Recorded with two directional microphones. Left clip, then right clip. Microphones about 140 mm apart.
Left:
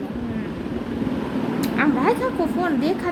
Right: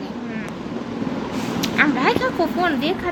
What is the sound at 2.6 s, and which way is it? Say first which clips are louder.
Speech: right 1 dB; 30° left (ahead or behind).